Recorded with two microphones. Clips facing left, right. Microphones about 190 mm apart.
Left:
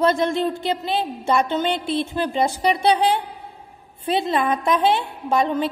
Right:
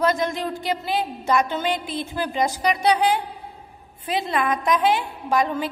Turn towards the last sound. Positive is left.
turn(degrees=25)  # may be behind; listen again after turning